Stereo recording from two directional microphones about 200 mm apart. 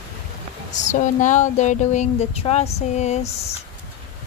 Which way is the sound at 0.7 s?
35° left (ahead or behind).